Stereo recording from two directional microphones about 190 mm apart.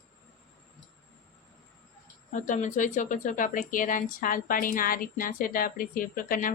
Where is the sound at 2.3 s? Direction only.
40° left (ahead or behind).